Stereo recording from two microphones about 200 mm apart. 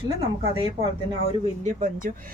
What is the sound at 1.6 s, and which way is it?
Speech, 40° right (ahead or behind).